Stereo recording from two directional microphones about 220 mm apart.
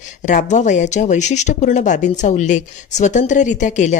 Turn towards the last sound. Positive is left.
turn(degrees=35)  # may be behind; listen again after turning